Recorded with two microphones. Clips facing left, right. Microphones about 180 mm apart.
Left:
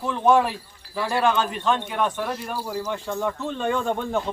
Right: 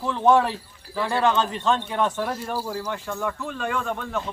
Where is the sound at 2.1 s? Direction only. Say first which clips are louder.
Right 1 dB; 15° left (ahead or behind); by 4.2 s 30° left (ahead or behind).